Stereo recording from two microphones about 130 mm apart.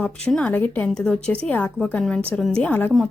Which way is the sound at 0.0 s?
10° left (ahead or behind).